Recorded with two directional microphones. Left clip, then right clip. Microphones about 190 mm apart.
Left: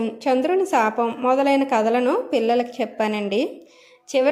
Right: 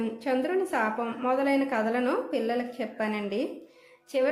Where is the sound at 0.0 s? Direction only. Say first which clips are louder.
Left 8 dB; 30° left (ahead or behind).